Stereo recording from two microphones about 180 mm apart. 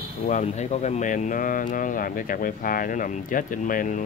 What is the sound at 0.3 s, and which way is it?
Speech, 40° left (ahead or behind).